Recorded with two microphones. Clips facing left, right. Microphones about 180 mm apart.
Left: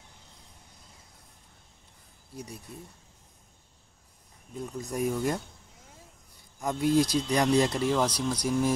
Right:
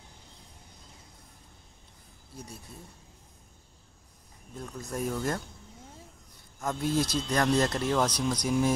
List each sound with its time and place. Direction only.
2.3 s speech: 15° left (ahead or behind)
4.6 s speech: 15° left (ahead or behind)
6.6 s speech: 15° left (ahead or behind)